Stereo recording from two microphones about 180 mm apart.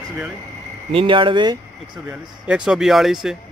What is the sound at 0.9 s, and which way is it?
Speech, 30° right (ahead or behind).